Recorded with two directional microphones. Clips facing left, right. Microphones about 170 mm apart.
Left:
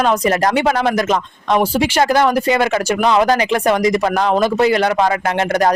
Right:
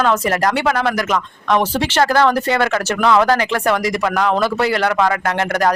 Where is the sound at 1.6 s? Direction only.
10° left (ahead or behind).